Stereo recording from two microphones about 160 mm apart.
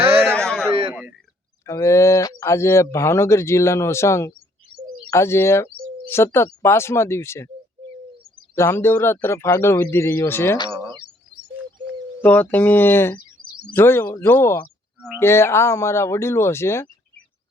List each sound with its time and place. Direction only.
0.3 s a sound: 5° left (ahead or behind)
1.6 s speech: 20° left (ahead or behind)
4.7 s a sound: 35° left (ahead or behind)
5.1 s speech: 15° left (ahead or behind)
8.5 s speech: 15° left (ahead or behind)
10.7 s bird: 30° right (ahead or behind)
12.2 s speech: 10° left (ahead or behind)